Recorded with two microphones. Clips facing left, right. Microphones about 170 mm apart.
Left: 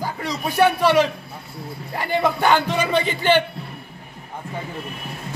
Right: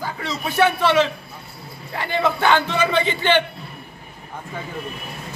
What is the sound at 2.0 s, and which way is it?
Speech, 10° left (ahead or behind).